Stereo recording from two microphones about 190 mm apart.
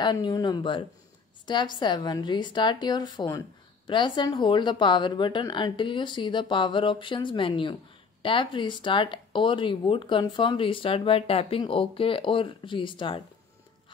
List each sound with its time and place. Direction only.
0.0 s a woman's voice: 25° left (ahead or behind)